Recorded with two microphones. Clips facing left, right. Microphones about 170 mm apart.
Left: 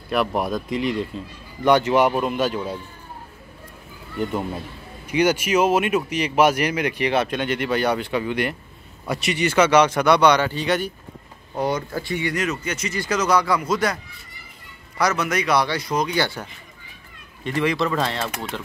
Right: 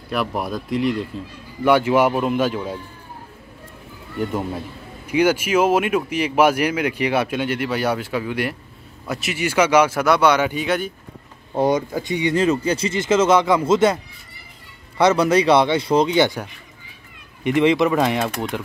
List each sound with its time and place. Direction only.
0.1 s speech: centre (ahead or behind)
4.3 s speech: 5° right (ahead or behind)
11.5 s speech: 20° right (ahead or behind)
12.4 s speech: 30° right (ahead or behind)
15.0 s speech: 30° right (ahead or behind)